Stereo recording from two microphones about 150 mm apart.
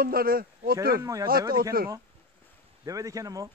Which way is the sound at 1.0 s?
20° right (ahead or behind).